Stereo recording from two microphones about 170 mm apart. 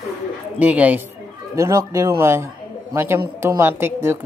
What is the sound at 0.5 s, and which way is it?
Speech, 10° right (ahead or behind).